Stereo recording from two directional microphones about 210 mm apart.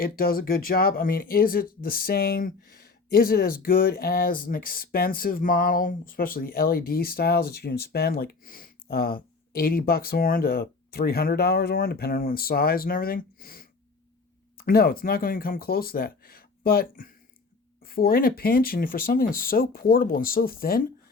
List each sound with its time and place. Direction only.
0.0 s speech: 45° left (ahead or behind)